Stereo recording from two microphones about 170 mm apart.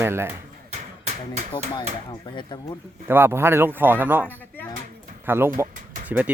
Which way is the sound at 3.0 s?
15° right (ahead or behind).